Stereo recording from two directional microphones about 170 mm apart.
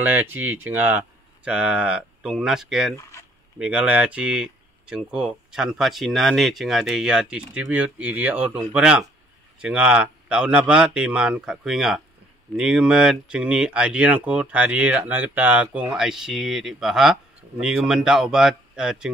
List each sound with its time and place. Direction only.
0.0 s speech: 10° right (ahead or behind)
3.0 s speech: 15° left (ahead or behind)
3.5 s speech: 5° right (ahead or behind)